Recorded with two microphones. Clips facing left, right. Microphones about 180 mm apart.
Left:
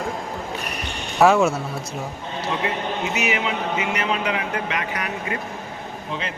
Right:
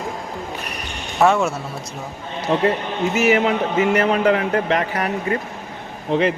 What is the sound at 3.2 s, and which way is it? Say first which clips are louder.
Speech: right 10 dB; 45° right (ahead or behind).